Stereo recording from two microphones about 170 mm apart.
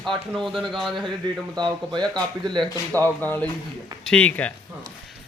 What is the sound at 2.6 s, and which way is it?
Speech, 15° left (ahead or behind).